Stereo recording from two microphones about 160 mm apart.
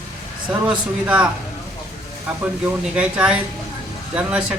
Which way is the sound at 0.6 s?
5° right (ahead or behind).